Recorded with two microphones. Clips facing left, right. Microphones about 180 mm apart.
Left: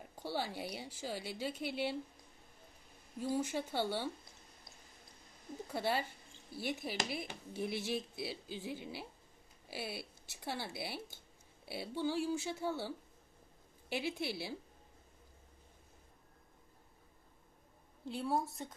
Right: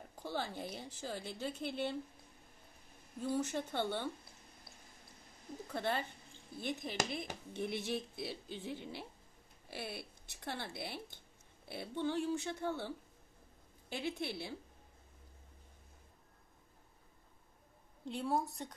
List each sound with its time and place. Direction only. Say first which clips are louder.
0.1 s a woman's voice: left 1 dB; 10° left (ahead or behind)
3.2 s a woman's voice: even; 5° left (ahead or behind)
5.7 s a woman's voice: left 1 dB; 5° left (ahead or behind)
13.9 s speech: left 1 dB; 5° left (ahead or behind)
18.0 s speech: even; centre (ahead or behind)